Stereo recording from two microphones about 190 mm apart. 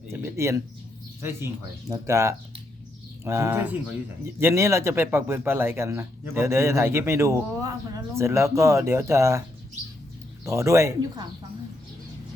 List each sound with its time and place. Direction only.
0.1 s speech: 15° right (ahead or behind)
10.4 s speech: 15° right (ahead or behind)